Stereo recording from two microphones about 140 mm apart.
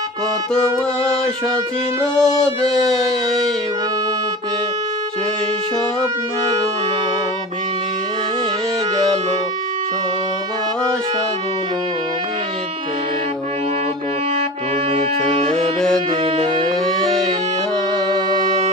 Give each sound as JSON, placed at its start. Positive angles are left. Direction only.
{"t": 2.0, "sound": "music", "side_deg": -25}
{"t": 2.7, "sound": "a sound", "side_deg": 0}
{"t": 14.9, "sound": "music", "side_deg": -45}